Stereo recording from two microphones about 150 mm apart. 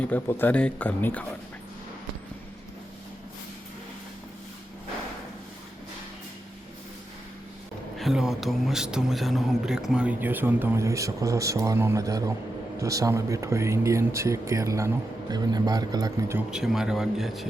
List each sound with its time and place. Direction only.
0.0 s speech: 10° left (ahead or behind)
7.9 s speech: centre (ahead or behind); by 16.4 s 25° right (ahead or behind)
16.5 s speech: 5° right (ahead or behind)